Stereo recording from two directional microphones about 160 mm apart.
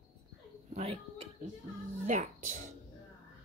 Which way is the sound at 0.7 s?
40° right (ahead or behind).